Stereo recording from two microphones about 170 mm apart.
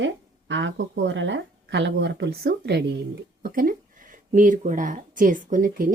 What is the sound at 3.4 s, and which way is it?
Speech, 55° right (ahead or behind).